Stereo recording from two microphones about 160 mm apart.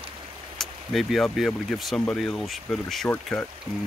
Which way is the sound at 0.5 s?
Centre (ahead or behind).